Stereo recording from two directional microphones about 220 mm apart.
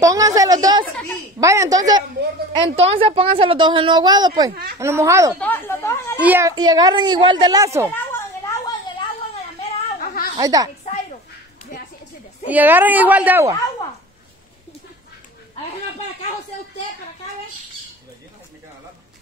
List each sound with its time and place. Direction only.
0.0 s a sound: 15° right (ahead or behind)
1.4 s a woman's voice: 15° right (ahead or behind)
2.5 s a woman's voice: 25° right (ahead or behind)
5.4 s speech: 10° left (ahead or behind)
6.1 s a woman's voice: 10° right (ahead or behind)
7.9 s a sound: 10° left (ahead or behind)
9.6 s a sound: 40° left (ahead or behind)
10.3 s a woman's voice: 15° right (ahead or behind)
12.4 s a woman's voice: 10° right (ahead or behind)